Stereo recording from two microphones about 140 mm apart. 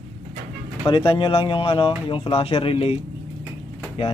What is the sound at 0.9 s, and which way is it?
Speech, 40° left (ahead or behind).